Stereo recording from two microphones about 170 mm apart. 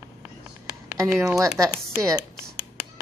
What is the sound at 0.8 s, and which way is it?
Speech, 15° right (ahead or behind).